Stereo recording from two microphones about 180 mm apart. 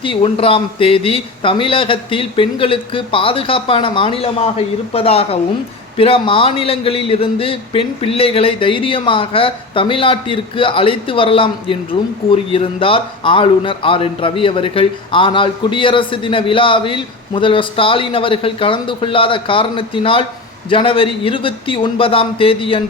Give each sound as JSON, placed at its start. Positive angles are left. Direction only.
{"t": 0.0, "sound": "a man's voice", "side_deg": 30}